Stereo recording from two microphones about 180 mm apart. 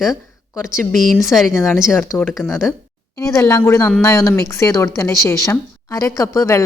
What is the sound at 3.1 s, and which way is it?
Speech, 15° left (ahead or behind).